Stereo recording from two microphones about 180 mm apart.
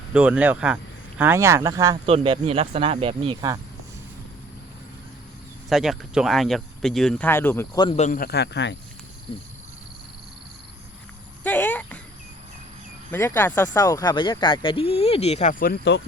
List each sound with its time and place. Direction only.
0.1 s speech: 5° right (ahead or behind)
2.0 s speech: 30° right (ahead or behind)
5.6 s speech: centre (ahead or behind); by 7.9 s 20° left (ahead or behind)
7.9 s speech: 45° left (ahead or behind); by 8.7 s 70° left (ahead or behind)
11.4 s a sound: 10° left (ahead or behind)
13.1 s speech: 15° left (ahead or behind); by 16.0 s 65° left (ahead or behind)